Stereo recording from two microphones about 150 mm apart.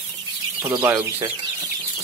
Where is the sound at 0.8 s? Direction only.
10° right (ahead or behind).